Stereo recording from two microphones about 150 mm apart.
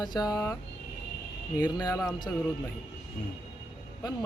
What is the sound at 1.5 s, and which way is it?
Speech, 25° left (ahead or behind).